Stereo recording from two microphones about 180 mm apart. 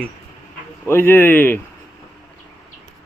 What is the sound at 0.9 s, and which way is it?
Speech, 10° left (ahead or behind).